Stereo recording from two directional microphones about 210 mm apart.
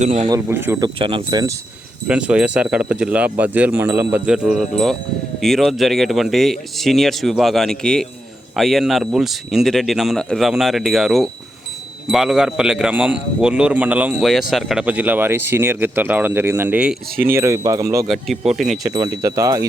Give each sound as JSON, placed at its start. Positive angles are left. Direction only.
{"t": 0.0, "sound": "speech", "side_deg": -35}
{"t": 0.3, "sound": "a man's voice", "side_deg": -10}
{"t": 0.9, "sound": "speech", "side_deg": -25}
{"t": 2.0, "sound": "a man's voice", "side_deg": -5}
{"t": 18.1, "sound": "speech", "side_deg": 0}
{"t": 18.8, "sound": "a man's voice", "side_deg": -15}